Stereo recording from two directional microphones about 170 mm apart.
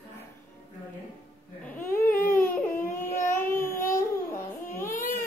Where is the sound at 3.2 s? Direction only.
15° left (ahead or behind).